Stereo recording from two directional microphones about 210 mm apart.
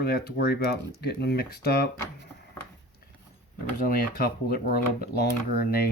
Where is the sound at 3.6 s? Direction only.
45° left (ahead or behind).